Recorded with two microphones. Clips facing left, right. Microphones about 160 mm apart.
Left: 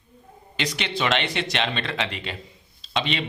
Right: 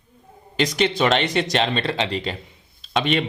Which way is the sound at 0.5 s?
40° right (ahead or behind).